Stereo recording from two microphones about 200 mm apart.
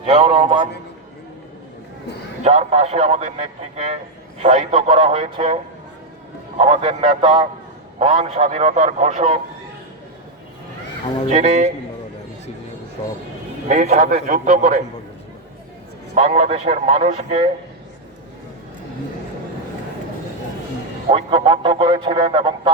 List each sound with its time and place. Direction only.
0.0 s a man's voice: 30° right (ahead or behind)
2.4 s a man's voice: 30° right (ahead or behind)
6.6 s a man's voice: 30° right (ahead or behind)
11.3 s a man's voice: 35° right (ahead or behind)
13.7 s a man's voice: 40° right (ahead or behind)
16.1 s a man's voice: 35° right (ahead or behind)
21.1 s speech: 25° right (ahead or behind)